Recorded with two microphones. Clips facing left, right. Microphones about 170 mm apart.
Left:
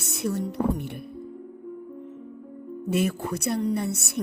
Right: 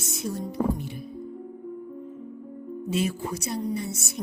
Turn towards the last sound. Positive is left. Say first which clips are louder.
# left 4 dB
turn(degrees=60)  # may be behind; listen again after turning